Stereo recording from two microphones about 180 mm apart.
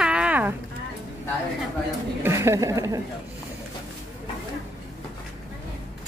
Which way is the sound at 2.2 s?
15° right (ahead or behind).